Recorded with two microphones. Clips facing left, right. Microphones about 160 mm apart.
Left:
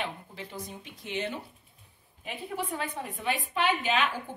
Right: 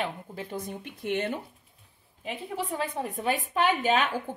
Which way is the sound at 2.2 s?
35° right (ahead or behind).